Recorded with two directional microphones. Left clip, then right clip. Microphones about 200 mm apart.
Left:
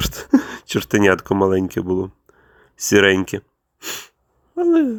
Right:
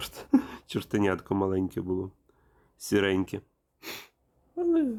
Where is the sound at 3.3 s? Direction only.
15° left (ahead or behind).